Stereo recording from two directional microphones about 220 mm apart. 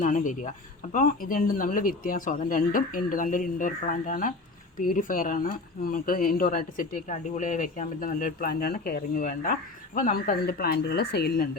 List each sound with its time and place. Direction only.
0.0 s speech: 35° left (ahead or behind)